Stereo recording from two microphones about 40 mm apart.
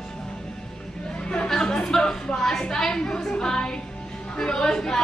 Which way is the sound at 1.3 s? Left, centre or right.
Centre.